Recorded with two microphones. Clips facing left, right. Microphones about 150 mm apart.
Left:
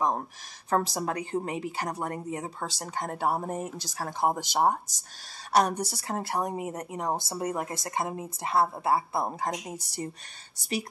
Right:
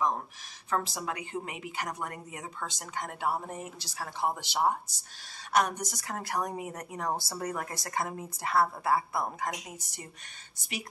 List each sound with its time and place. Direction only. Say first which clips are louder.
0.7 s a woman's voice: left 5 dB; 40° left (ahead or behind)